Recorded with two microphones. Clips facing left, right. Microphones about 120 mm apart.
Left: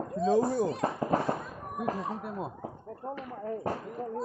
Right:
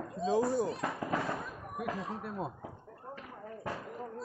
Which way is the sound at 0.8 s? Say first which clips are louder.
Left 6 dB; 35° left (ahead or behind).